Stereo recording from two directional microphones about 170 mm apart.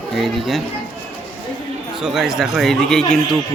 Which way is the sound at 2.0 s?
5° right (ahead or behind).